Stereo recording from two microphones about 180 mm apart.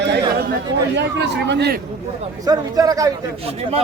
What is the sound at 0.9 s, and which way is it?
Speech, 75° right (ahead or behind).